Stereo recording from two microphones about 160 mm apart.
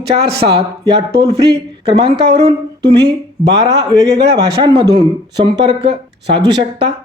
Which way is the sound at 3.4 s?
25° right (ahead or behind).